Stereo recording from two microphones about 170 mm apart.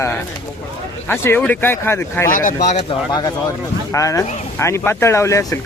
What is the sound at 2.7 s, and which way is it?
Speech, 40° left (ahead or behind).